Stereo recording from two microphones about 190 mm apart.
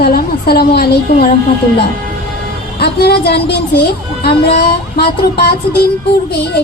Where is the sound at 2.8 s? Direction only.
55° left (ahead or behind).